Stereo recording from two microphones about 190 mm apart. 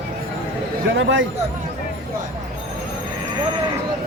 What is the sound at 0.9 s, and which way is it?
Speech, 75° right (ahead or behind).